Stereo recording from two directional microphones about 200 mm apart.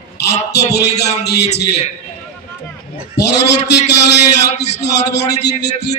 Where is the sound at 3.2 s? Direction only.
55° left (ahead or behind).